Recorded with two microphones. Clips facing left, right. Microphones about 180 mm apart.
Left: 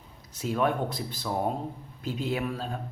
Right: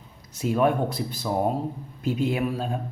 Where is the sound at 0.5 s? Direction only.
10° right (ahead or behind).